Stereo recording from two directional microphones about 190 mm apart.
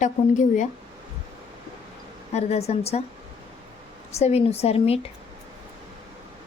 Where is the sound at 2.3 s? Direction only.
35° left (ahead or behind).